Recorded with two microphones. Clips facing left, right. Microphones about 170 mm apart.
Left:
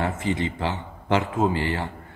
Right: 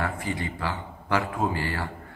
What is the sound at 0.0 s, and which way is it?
A man's voice, 20° left (ahead or behind).